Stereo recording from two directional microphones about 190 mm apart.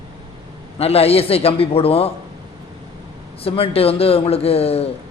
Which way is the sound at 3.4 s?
30° left (ahead or behind).